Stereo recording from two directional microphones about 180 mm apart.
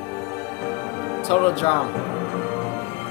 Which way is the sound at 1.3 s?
35° left (ahead or behind).